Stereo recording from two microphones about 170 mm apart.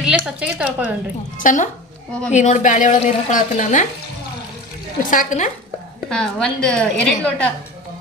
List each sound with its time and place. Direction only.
0.0 s a woman's voice: 5° right (ahead or behind)
1.4 s speech: 50° left (ahead or behind)
5.1 s speech: 45° left (ahead or behind)
6.0 s a woman's voice: 5° left (ahead or behind)